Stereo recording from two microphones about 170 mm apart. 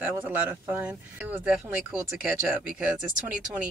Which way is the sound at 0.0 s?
10° right (ahead or behind).